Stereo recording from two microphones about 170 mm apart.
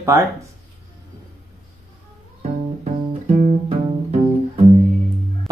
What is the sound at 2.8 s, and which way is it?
Music, 40° right (ahead or behind).